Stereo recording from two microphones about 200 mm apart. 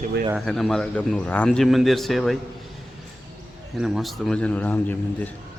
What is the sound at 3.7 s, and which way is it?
A man's voice, centre (ahead or behind).